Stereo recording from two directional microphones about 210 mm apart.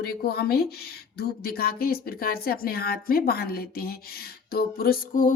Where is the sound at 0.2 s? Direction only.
50° left (ahead or behind).